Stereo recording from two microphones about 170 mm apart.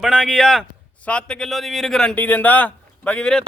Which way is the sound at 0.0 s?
Centre (ahead or behind).